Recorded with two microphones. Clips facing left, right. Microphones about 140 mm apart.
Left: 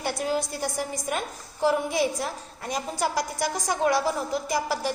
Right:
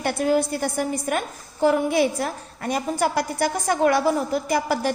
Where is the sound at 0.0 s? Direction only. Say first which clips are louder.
Right 6 dB; 60° right (ahead or behind).